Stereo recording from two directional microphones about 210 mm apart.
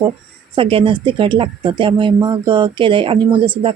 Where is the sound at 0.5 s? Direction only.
25° right (ahead or behind).